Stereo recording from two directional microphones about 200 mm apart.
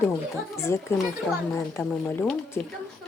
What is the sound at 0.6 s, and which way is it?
Speech, 15° left (ahead or behind).